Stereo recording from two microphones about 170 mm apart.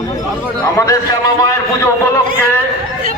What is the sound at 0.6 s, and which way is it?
Speech, 15° left (ahead or behind).